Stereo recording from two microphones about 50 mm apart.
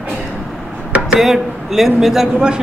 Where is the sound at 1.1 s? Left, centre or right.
Centre.